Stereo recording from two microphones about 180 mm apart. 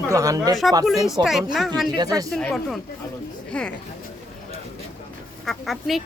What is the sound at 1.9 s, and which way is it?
Speech, 20° right (ahead or behind).